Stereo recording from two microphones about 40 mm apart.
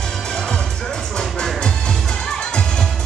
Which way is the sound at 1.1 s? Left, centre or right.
Centre.